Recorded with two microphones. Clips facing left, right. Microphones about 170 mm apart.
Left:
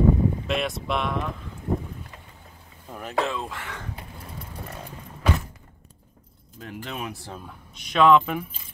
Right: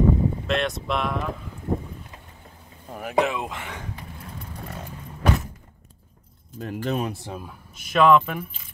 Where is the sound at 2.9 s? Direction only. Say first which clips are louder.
Right 4 dB; 10° right (ahead or behind).